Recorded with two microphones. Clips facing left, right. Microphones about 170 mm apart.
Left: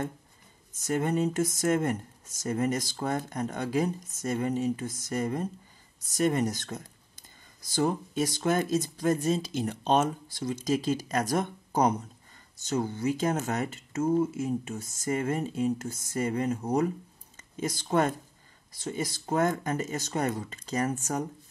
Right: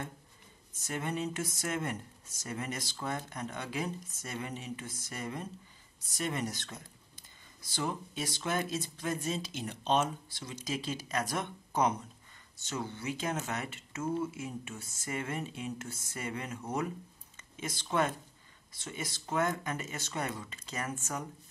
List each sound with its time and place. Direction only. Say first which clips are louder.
0.8 s speech: left 8 dB; 45° left (ahead or behind)